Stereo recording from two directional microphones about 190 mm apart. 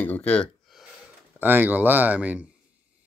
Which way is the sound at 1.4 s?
10° right (ahead or behind).